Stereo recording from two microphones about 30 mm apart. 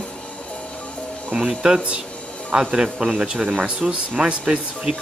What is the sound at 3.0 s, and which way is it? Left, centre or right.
Speech, right.